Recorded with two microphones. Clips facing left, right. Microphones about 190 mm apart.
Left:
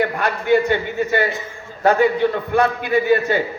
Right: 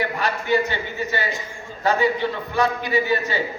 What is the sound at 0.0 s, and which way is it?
A man's voice, 55° left (ahead or behind).